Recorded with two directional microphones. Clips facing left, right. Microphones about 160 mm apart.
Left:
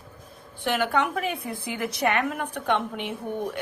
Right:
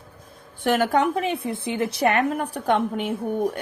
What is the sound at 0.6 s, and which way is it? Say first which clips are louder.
A woman's voice: right 5 dB; 45° right (ahead or behind).